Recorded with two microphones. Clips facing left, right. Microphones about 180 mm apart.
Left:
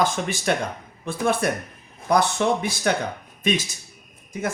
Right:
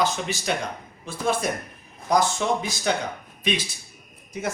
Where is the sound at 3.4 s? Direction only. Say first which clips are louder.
Left 3 dB; 45° left (ahead or behind).